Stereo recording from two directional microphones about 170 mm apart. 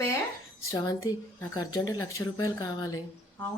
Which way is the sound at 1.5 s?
20° left (ahead or behind).